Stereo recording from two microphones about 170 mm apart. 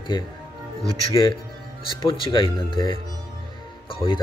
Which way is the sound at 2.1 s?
30° left (ahead or behind).